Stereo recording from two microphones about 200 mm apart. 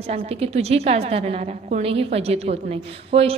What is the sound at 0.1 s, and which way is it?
A woman's voice, 30° right (ahead or behind).